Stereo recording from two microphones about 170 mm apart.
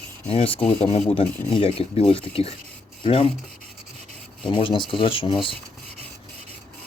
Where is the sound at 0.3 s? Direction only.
35° left (ahead or behind).